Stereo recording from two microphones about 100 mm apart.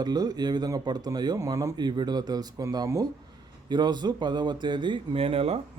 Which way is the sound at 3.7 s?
45° right (ahead or behind).